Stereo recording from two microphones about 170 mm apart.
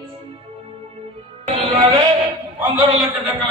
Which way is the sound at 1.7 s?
20° right (ahead or behind).